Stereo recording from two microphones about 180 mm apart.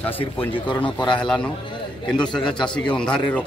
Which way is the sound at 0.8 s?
25° left (ahead or behind).